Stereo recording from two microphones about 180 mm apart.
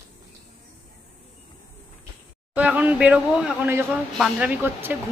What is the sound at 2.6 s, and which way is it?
A child's voice, 10° right (ahead or behind).